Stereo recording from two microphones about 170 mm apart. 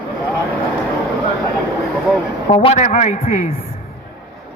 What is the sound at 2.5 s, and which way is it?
Speech, 35° left (ahead or behind).